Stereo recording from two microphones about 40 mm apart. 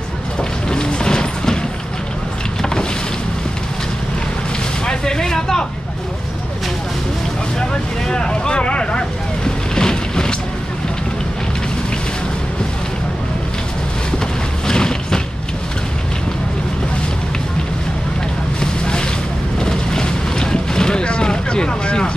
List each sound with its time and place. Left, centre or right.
0.4 s a sound: centre
2.6 s vehicle: centre
4.8 s vehicle: centre
7.7 s boat: left
14.7 s a sound: centre
18.6 s boat: left